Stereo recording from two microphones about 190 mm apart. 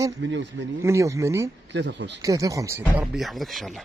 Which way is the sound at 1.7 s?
70° right (ahead or behind).